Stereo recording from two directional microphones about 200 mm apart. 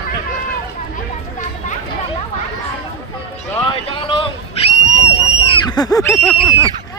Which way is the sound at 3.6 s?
25° left (ahead or behind).